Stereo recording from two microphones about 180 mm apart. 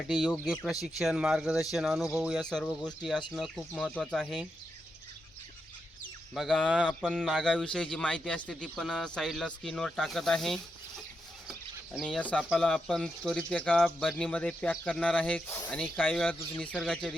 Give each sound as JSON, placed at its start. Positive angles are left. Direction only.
{"t": 0.1, "sound": "speech", "side_deg": 0}
{"t": 6.3, "sound": "speech", "side_deg": 0}
{"t": 12.0, "sound": "speech", "side_deg": 5}